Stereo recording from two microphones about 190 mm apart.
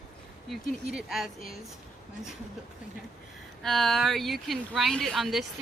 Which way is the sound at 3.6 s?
Centre (ahead or behind).